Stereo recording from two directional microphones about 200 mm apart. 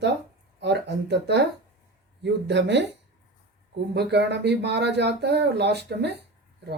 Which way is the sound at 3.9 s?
60° right (ahead or behind).